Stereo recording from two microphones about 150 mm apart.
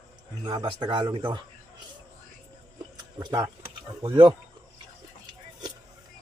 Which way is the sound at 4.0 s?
30° right (ahead or behind).